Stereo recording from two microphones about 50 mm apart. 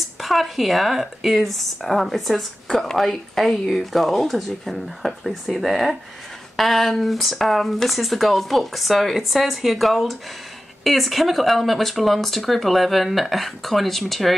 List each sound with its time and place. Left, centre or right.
0.2 s speech: centre